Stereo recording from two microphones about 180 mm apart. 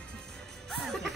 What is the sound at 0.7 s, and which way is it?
Music, centre (ahead or behind).